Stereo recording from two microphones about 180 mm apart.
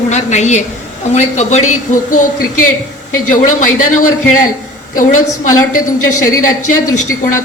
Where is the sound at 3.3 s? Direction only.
45° left (ahead or behind).